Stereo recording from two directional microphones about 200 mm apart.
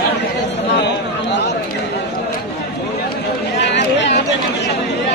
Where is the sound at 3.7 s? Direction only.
60° left (ahead or behind).